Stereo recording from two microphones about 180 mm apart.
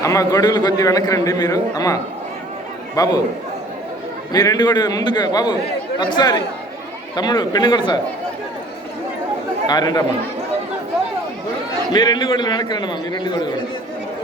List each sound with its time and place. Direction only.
0.0 s a man's voice: 20° left (ahead or behind)
4.3 s a man's voice: 20° left (ahead or behind)
9.6 s a man's voice: 20° left (ahead or behind)
11.9 s a man's voice: 25° left (ahead or behind)